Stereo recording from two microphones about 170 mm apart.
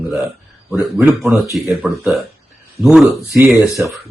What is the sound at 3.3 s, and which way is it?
Speech, 15° right (ahead or behind).